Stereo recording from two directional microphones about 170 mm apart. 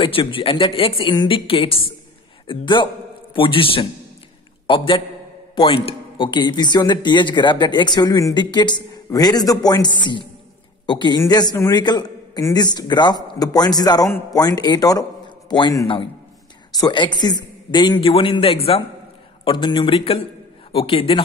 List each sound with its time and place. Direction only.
0.0 s a woman's voice: 30° left (ahead or behind)